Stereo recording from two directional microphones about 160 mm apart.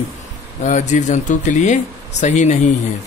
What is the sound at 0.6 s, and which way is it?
Speech, 50° left (ahead or behind).